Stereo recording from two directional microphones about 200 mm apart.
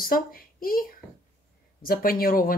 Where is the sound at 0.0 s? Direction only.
45° left (ahead or behind).